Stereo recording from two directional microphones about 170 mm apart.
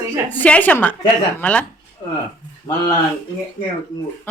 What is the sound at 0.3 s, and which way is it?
Speech, 10° left (ahead or behind).